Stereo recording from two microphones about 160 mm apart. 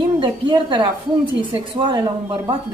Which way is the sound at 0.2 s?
30° right (ahead or behind).